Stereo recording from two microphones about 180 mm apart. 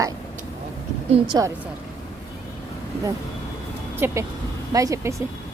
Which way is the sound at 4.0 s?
15° right (ahead or behind).